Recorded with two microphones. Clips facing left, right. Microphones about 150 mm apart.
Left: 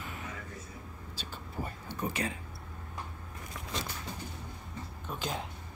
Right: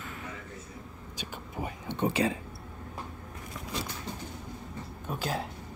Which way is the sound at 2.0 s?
30° right (ahead or behind).